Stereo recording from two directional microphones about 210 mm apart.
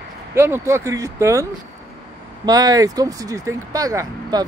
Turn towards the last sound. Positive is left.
turn(degrees=-15)  # may be behind; listen again after turning